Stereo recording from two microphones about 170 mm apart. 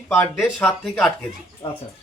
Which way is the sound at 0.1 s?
Centre (ahead or behind).